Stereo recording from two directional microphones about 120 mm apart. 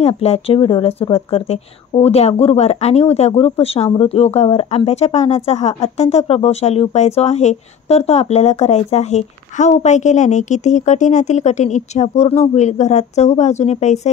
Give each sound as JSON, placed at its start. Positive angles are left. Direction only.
{"t": 0.0, "sound": "speech", "side_deg": 60}